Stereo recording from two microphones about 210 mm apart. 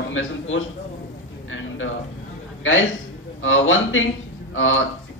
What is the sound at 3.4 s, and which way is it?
A man's voice, 70° left (ahead or behind).